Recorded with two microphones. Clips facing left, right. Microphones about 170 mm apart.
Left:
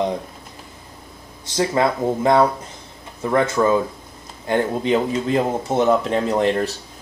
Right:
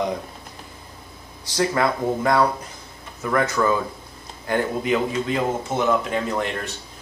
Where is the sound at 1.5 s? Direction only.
25° left (ahead or behind).